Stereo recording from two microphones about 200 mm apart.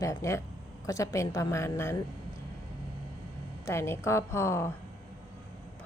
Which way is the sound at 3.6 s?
15° left (ahead or behind).